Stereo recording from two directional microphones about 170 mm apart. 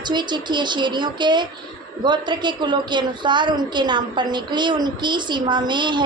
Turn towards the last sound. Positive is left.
turn(degrees=-25)  # may be behind; listen again after turning